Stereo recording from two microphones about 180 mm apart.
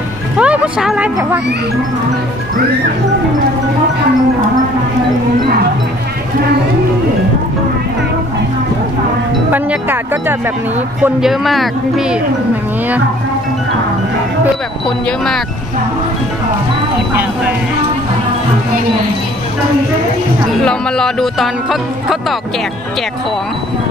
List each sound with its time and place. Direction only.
0.4 s speech: 5° right (ahead or behind)
9.5 s speech: 10° right (ahead or behind)
15.0 s speech: centre (ahead or behind)
20.6 s speech: 5° left (ahead or behind)